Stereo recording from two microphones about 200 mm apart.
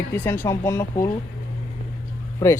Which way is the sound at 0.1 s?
10° left (ahead or behind).